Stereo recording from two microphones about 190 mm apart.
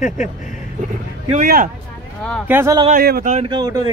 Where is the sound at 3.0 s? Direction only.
50° right (ahead or behind).